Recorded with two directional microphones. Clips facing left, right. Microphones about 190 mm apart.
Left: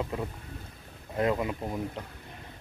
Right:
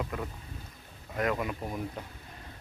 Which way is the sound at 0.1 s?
30° left (ahead or behind).